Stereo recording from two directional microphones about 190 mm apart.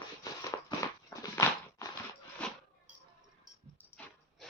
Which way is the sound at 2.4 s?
5° left (ahead or behind).